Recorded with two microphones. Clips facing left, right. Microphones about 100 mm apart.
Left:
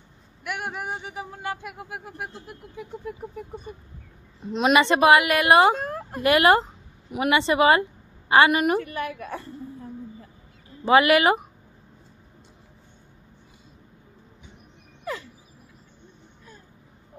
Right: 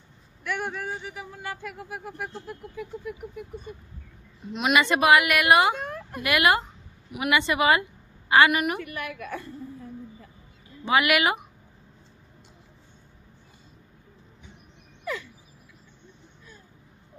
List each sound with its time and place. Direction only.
0.4 s a man's voice: 10° left (ahead or behind); by 3.4 s 30° left (ahead or behind)
4.5 s speech: 30° left (ahead or behind)
10.9 s speech: 30° left (ahead or behind)